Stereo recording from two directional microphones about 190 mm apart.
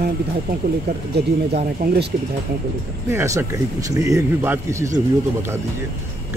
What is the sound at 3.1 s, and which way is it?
Speech, 15° right (ahead or behind).